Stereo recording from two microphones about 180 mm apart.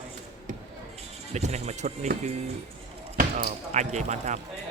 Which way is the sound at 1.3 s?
40° right (ahead or behind).